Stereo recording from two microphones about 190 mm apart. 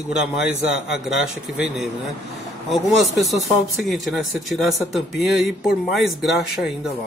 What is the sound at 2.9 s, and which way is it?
Speech, centre (ahead or behind).